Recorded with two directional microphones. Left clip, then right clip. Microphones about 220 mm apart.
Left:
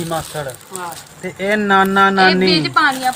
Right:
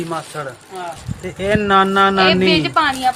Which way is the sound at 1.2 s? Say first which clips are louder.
Even; 5° left (ahead or behind).